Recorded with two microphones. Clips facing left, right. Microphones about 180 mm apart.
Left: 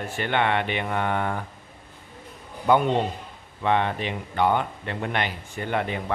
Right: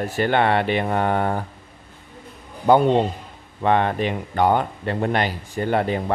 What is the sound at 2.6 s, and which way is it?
Speech, 35° right (ahead or behind).